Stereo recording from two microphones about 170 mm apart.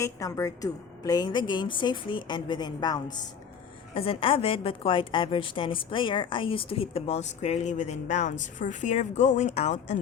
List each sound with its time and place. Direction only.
0.0 s a woman's voice: 20° left (ahead or behind); by 10.0 s 45° left (ahead or behind)